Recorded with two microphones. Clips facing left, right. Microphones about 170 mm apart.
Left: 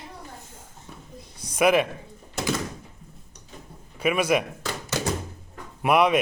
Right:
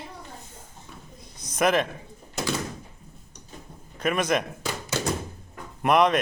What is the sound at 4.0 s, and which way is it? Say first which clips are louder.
Speech: left 2 dB; 10° left (ahead or behind).